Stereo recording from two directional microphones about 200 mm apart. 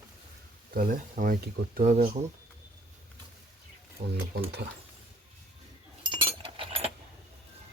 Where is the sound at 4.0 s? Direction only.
50° right (ahead or behind).